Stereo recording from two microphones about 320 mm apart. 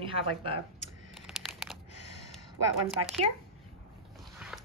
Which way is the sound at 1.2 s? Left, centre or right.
Centre.